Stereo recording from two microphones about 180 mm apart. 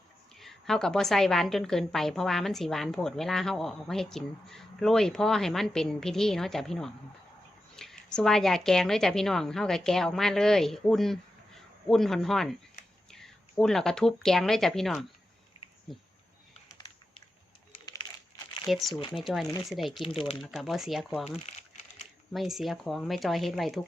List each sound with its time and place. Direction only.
0.3 s a woman's voice: centre (ahead or behind)
16.7 s a sound: 25° left (ahead or behind)
18.7 s a woman's voice: centre (ahead or behind)
21.2 s crumpling: 35° left (ahead or behind)
22.3 s a woman's voice: centre (ahead or behind)